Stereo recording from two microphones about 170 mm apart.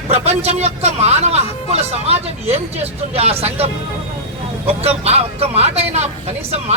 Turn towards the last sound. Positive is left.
turn(degrees=-40)  # may be behind; listen again after turning